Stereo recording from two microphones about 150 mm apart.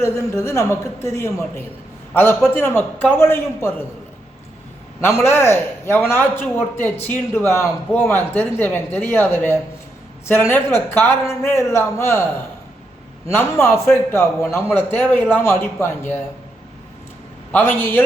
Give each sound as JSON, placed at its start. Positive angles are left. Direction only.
{"t": 0.0, "sound": "a woman's voice", "side_deg": 20}
{"t": 5.2, "sound": "a man's voice", "side_deg": 15}
{"t": 13.3, "sound": "a man's voice", "side_deg": 15}
{"t": 17.5, "sound": "a man's voice", "side_deg": 15}